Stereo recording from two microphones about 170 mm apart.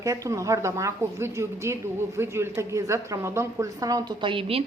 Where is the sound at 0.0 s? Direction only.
20° right (ahead or behind).